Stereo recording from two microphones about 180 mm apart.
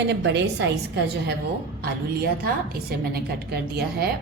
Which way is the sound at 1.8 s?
60° right (ahead or behind).